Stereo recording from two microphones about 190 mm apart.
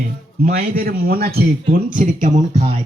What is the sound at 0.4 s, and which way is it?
Speech, 50° right (ahead or behind).